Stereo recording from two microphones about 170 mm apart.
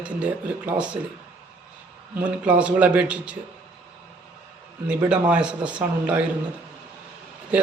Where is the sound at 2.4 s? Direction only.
10° right (ahead or behind).